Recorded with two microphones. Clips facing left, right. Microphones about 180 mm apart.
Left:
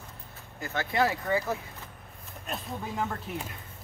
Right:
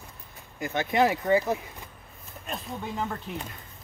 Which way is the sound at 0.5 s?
20° right (ahead or behind).